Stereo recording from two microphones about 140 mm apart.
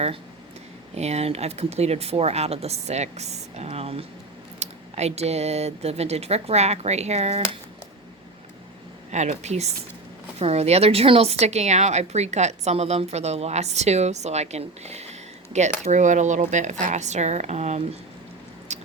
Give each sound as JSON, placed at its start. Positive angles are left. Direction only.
{"t": 0.9, "sound": "a woman's voice", "side_deg": -50}
{"t": 9.1, "sound": "a woman's voice", "side_deg": -55}
{"t": 18.7, "sound": "biting", "side_deg": -55}